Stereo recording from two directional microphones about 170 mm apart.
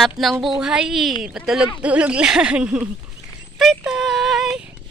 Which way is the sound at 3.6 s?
Centre (ahead or behind).